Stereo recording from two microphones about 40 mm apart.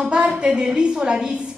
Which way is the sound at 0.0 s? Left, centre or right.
Right.